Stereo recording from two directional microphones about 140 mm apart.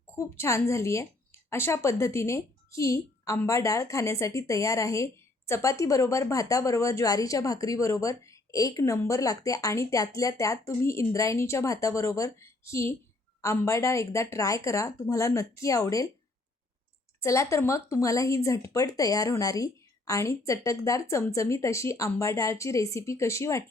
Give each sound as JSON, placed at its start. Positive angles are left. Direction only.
{"t": 0.2, "sound": "speech", "side_deg": 20}
{"t": 17.2, "sound": "speech", "side_deg": 20}